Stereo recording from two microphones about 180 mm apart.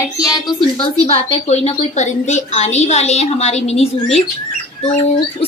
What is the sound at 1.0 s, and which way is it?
A woman's voice, 35° left (ahead or behind).